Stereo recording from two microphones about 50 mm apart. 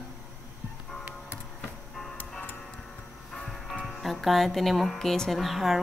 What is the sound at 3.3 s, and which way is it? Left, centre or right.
Music, centre.